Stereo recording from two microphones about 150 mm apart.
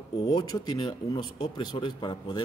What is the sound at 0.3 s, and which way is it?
A man's voice, 25° left (ahead or behind).